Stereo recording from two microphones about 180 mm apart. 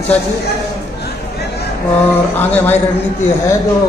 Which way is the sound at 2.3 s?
10° left (ahead or behind).